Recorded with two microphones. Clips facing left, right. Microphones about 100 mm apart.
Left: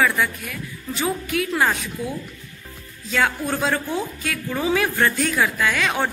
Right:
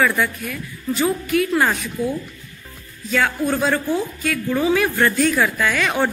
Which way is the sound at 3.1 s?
Centre (ahead or behind).